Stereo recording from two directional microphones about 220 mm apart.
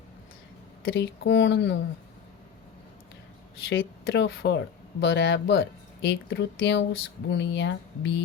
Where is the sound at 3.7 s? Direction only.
60° left (ahead or behind).